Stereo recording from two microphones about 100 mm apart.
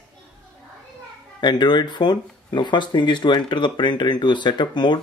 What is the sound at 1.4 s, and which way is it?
Speech, 50° left (ahead or behind).